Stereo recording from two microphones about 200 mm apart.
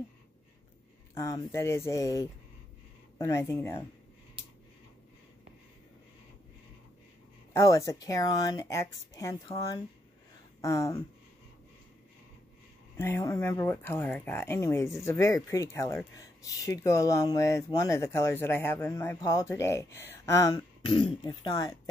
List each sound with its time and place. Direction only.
1.1 s speech: 15° left (ahead or behind)
7.5 s speech: 15° left (ahead or behind)
12.9 s speech: 15° left (ahead or behind)